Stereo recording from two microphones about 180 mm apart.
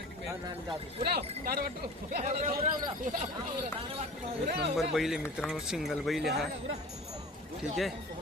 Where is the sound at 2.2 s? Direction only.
40° right (ahead or behind).